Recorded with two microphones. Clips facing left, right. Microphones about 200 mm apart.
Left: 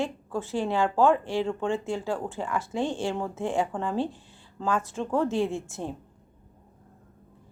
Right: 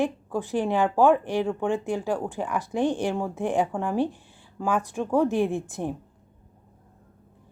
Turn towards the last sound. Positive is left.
turn(degrees=-15)  # may be behind; listen again after turning